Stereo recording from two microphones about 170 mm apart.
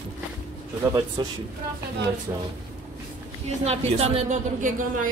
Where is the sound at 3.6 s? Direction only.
45° right (ahead or behind).